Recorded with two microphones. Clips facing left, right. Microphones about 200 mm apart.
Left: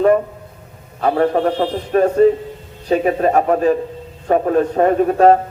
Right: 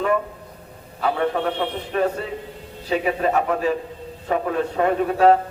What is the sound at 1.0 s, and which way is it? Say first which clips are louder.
A man's voice: left 6 dB; 45° left (ahead or behind).